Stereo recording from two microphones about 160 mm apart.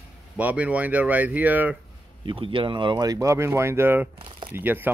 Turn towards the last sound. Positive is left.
turn(degrees=-10)  # may be behind; listen again after turning